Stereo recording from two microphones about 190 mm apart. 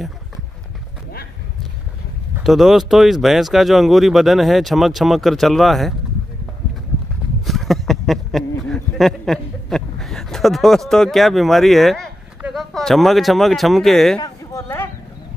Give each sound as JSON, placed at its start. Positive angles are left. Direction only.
{"t": 2.4, "sound": "speech", "side_deg": 0}
{"t": 7.4, "sound": "speech", "side_deg": 0}
{"t": 14.2, "sound": "a sound", "side_deg": 15}